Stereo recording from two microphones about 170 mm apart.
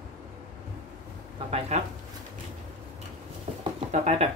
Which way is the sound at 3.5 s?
40° right (ahead or behind).